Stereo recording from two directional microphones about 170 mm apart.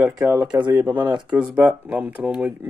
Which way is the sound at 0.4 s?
25° right (ahead or behind).